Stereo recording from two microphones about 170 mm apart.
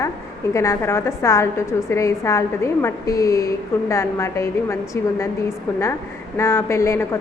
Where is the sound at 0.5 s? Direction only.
15° left (ahead or behind).